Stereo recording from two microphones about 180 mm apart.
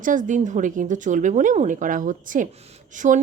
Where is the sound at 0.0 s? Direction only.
45° right (ahead or behind).